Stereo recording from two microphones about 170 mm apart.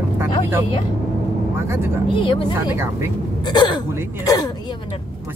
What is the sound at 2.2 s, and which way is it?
Speech, 30° left (ahead or behind).